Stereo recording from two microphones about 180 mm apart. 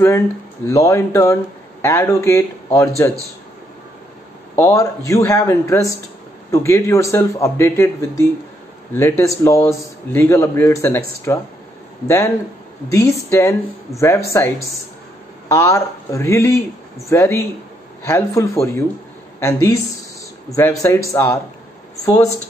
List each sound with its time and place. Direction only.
0.7 s speech: 15° left (ahead or behind)
4.6 s speech: 15° left (ahead or behind)
12.9 s speech: 15° left (ahead or behind)